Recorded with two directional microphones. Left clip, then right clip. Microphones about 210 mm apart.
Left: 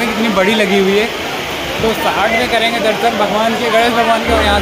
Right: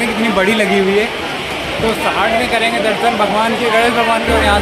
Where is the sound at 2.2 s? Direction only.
Centre (ahead or behind).